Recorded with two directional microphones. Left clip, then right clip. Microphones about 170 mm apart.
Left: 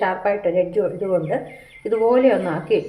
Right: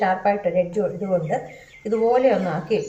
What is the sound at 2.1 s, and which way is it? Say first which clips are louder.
Speech: left 2 dB; 35° left (ahead or behind).